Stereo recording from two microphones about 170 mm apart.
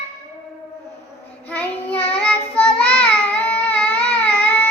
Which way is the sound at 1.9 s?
35° left (ahead or behind).